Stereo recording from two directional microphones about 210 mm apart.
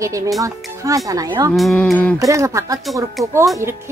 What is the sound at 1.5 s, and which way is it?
Cattle, 5° left (ahead or behind).